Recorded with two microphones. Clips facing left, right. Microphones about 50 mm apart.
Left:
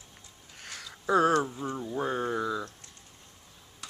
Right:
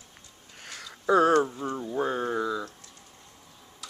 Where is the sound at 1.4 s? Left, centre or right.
Centre.